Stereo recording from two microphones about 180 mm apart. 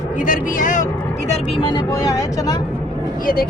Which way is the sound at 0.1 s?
45° left (ahead or behind).